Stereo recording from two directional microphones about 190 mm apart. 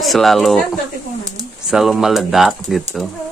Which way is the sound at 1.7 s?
Centre (ahead or behind).